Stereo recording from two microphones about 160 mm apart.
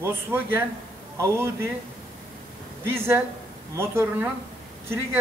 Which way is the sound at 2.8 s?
15° right (ahead or behind).